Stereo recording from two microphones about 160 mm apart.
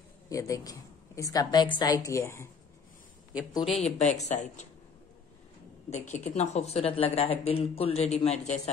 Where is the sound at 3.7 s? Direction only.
45° left (ahead or behind).